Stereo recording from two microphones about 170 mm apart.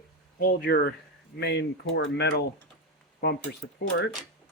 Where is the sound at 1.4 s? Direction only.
85° left.